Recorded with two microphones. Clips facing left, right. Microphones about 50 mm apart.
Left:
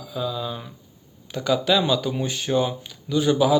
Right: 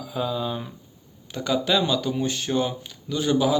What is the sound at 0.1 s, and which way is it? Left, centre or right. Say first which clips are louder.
A man's voice: right 1 dB; centre.